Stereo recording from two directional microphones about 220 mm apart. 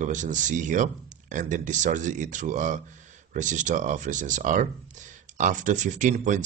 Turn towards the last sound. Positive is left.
turn(degrees=-35)  # may be behind; listen again after turning